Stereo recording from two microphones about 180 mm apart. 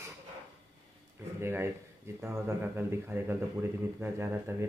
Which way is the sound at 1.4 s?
15° right (ahead or behind).